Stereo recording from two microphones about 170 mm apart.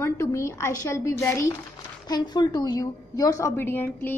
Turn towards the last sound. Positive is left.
turn(degrees=10)  # may be behind; listen again after turning